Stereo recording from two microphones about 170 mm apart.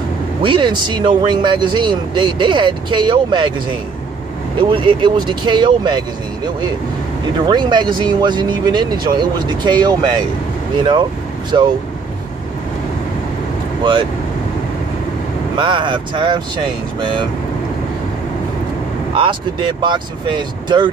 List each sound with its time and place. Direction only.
0.4 s speech: 30° right (ahead or behind)
4.6 s speech: 30° right (ahead or behind)
7.4 s speech: 25° right (ahead or behind)
15.5 s speech: 30° right (ahead or behind)
19.1 s speech: 30° right (ahead or behind)